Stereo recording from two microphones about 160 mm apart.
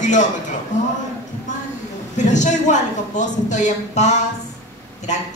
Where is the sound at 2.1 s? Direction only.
50° left (ahead or behind).